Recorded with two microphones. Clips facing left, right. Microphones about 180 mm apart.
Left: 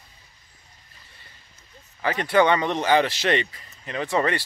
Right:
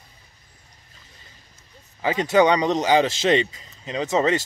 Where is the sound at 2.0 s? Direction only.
20° right (ahead or behind).